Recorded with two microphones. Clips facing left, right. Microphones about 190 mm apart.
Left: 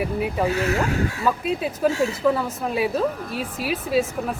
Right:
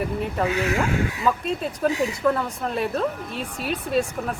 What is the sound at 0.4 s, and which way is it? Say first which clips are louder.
Speech: even; 35° left (ahead or behind).